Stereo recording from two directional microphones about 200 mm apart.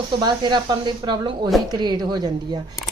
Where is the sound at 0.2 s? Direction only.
20° right (ahead or behind).